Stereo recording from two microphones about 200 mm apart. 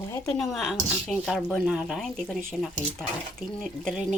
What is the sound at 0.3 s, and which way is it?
Speech, centre (ahead or behind).